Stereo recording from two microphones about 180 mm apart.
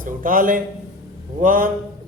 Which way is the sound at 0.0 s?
50° right (ahead or behind).